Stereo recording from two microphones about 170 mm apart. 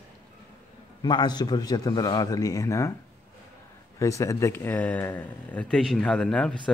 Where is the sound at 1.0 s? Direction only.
25° left (ahead or behind).